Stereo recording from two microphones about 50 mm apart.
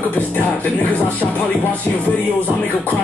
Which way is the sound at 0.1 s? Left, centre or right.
Left.